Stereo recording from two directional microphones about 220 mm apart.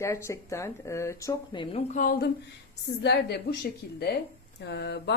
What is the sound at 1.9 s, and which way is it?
Speech, 40° left (ahead or behind).